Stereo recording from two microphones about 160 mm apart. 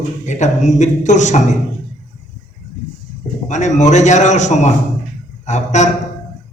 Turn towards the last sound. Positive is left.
turn(degrees=45)  # may be behind; listen again after turning